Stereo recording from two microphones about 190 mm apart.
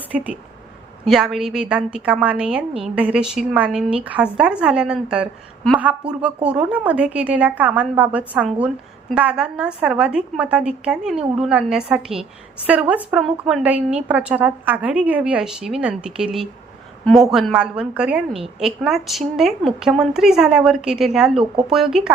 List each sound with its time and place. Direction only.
0.1 s a woman's voice: 5° right (ahead or behind)